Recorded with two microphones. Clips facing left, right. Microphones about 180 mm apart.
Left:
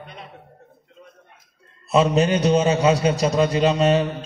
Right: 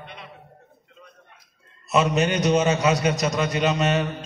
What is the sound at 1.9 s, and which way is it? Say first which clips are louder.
A man's voice: left 3 dB; 30° left (ahead or behind).